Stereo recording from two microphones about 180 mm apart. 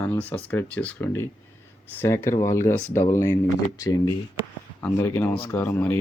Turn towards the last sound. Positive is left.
turn(degrees=10)  # may be behind; listen again after turning